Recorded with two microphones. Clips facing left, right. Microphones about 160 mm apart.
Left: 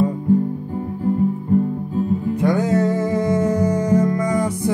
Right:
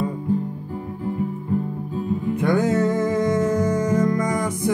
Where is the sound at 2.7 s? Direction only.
35° left (ahead or behind).